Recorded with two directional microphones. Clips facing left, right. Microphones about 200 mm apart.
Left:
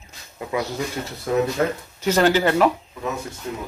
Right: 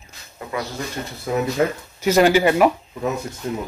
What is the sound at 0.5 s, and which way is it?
Speech, 20° left (ahead or behind).